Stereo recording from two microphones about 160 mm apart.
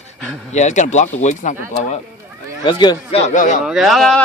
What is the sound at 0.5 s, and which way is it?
Speech, 50° left (ahead or behind).